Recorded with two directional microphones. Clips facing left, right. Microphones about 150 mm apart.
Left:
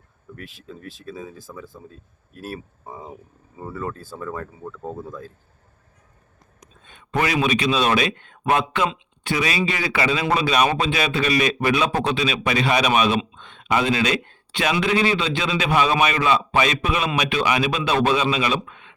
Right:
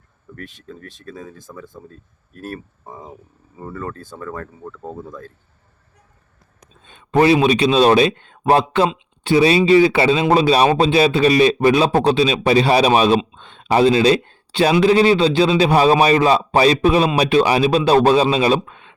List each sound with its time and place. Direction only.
0.3 s speech: 5° left (ahead or behind)
6.6 s speech: 30° right (ahead or behind)